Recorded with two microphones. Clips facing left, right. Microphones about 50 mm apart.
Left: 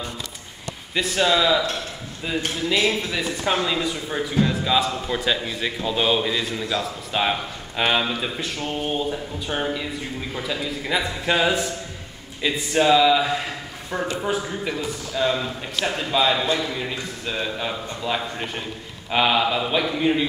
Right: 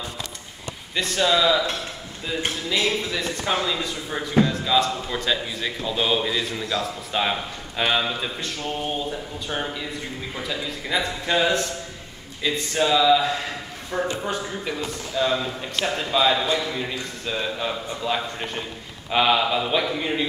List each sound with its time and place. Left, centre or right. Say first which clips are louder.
0.9 s speech: left 1 dB; centre
2.7 s a man's voice: left 2 dB; centre